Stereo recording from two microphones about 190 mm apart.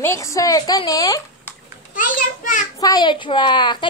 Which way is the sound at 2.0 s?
45° left (ahead or behind).